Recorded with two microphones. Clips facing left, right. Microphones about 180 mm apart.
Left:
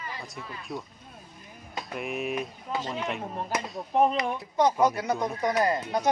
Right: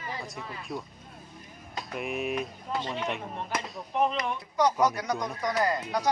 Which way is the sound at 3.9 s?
45° left (ahead or behind).